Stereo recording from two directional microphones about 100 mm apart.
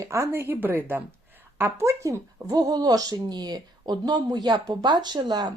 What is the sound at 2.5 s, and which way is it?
A woman's voice, 40° right (ahead or behind).